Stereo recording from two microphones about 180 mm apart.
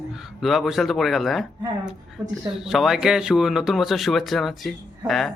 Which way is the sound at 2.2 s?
20° right (ahead or behind).